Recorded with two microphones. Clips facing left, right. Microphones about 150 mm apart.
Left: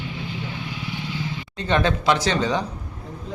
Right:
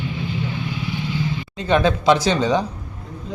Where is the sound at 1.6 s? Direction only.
10° right (ahead or behind).